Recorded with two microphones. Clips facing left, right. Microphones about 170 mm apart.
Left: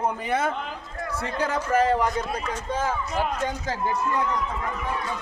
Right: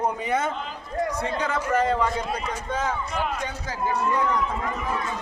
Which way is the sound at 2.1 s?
10° right (ahead or behind).